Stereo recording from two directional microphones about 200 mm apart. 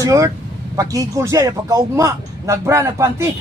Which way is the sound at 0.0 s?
15° right (ahead or behind).